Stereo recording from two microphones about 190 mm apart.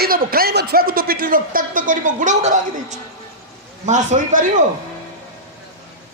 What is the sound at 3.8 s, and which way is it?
Speech, 40° right (ahead or behind).